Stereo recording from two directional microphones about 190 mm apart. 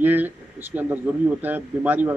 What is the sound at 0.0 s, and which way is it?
Speech, 10° right (ahead or behind).